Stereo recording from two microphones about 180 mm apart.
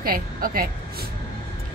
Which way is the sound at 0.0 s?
55° right (ahead or behind).